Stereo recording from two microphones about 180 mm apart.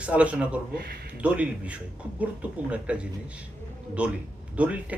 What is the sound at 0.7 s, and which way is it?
Speech, 60° right (ahead or behind).